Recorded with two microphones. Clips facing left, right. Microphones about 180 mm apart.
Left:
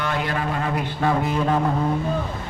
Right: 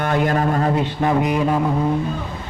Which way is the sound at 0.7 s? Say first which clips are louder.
Right 4 dB; 20° right (ahead or behind).